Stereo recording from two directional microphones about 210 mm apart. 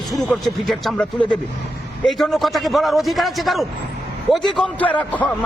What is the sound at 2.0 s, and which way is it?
A man's voice, centre (ahead or behind).